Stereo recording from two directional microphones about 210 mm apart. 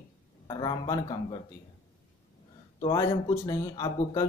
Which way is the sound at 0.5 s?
20° left (ahead or behind).